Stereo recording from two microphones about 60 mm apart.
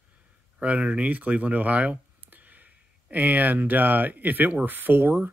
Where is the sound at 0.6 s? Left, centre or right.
Right.